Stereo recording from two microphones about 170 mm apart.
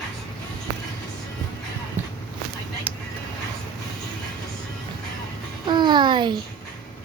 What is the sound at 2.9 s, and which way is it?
Music, 10° right (ahead or behind).